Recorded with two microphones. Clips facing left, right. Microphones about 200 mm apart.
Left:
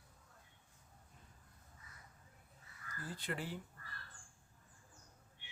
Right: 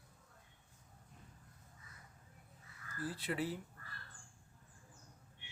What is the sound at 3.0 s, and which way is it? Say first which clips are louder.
Speech: right 5 dB; 5° right (ahead or behind).